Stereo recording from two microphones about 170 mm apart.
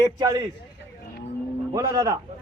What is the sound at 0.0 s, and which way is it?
Speech, 20° right (ahead or behind).